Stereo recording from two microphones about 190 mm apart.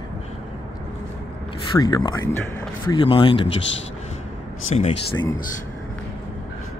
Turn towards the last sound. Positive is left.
turn(degrees=30)  # may be behind; listen again after turning